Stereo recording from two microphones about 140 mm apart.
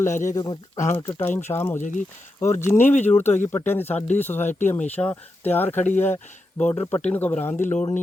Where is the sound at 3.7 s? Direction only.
15° left (ahead or behind).